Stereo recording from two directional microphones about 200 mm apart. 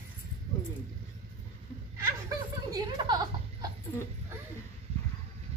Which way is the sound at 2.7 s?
20° right (ahead or behind).